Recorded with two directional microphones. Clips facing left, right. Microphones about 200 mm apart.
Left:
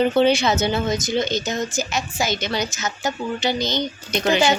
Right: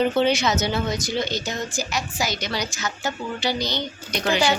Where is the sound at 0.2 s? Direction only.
30° left (ahead or behind).